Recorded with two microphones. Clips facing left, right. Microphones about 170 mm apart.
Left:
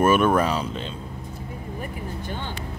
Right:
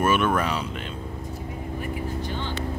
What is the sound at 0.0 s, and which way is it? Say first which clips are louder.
Speech: left 4 dB; 40° left (ahead or behind).